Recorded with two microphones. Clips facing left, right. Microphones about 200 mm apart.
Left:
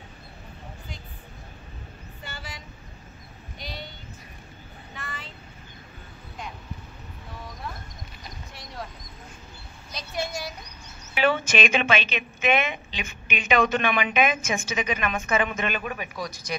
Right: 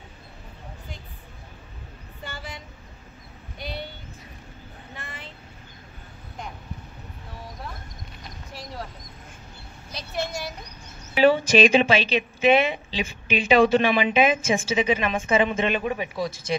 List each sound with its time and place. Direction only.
3.5 s child singing: 60° right (ahead or behind)
9.9 s a sound: centre (ahead or behind)
11.1 s a woman's voice: 35° right (ahead or behind)